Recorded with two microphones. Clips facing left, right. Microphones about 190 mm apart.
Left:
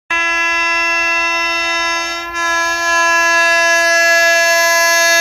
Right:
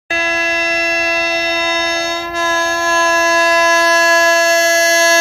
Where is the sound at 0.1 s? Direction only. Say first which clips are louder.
Right 4 dB; 35° right (ahead or behind).